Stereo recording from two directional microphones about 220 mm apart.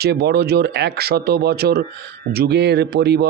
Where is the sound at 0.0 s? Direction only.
45° right (ahead or behind).